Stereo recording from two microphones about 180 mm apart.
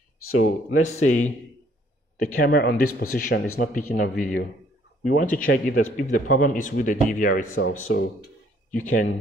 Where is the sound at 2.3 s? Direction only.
55° left (ahead or behind).